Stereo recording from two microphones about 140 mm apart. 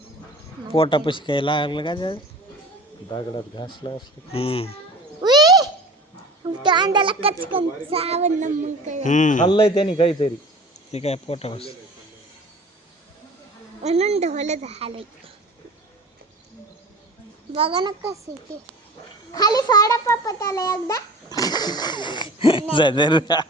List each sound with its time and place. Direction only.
0.7 s a child's voice: 40° left (ahead or behind)
5.2 s a sound: 30° right (ahead or behind)
6.6 s a child's voice: 30° right (ahead or behind); by 9.0 s 55° right (ahead or behind)
9.0 s speech: 65° left (ahead or behind)
9.5 s a child's voice: 40° left (ahead or behind)
13.8 s a woman's voice: 50° right (ahead or behind)
17.5 s a child's voice: 40° right (ahead or behind)
19.3 s a child's voice: 25° left (ahead or behind)